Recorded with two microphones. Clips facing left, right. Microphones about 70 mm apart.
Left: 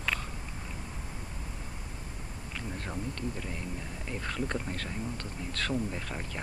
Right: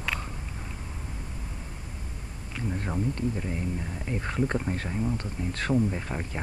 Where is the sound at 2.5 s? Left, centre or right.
Centre.